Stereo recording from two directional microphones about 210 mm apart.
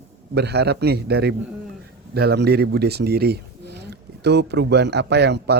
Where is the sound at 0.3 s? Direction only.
50° right (ahead or behind).